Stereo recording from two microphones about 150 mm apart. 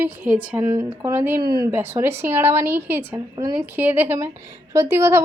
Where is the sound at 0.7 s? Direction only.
20° right (ahead or behind).